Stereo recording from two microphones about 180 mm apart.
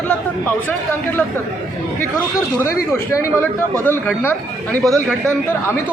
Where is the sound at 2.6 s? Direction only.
15° left (ahead or behind).